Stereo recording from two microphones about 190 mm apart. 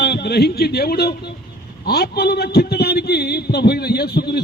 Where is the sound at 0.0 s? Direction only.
60° left (ahead or behind).